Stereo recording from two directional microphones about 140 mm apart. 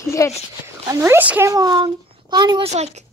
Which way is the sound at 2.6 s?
50° right (ahead or behind).